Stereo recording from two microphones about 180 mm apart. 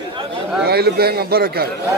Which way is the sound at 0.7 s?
60° right (ahead or behind).